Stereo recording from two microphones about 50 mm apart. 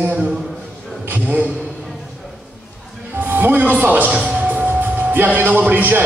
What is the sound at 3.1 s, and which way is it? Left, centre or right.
Music, right.